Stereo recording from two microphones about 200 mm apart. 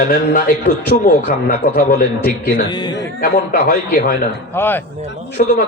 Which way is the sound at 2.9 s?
45° left (ahead or behind).